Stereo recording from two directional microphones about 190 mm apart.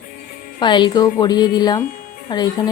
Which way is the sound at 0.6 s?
25° left (ahead or behind).